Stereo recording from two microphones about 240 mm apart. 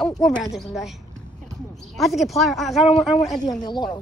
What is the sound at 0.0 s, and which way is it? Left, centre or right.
Speech, centre.